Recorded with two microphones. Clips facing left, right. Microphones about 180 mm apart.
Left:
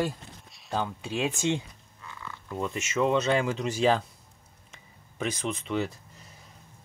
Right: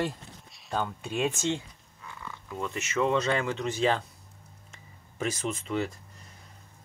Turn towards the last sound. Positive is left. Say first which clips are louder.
# left 1 dB
turn(degrees=0)  # may be behind; listen again after turning